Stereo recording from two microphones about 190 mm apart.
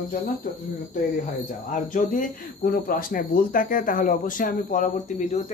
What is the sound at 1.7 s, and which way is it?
Speech, 45° left (ahead or behind).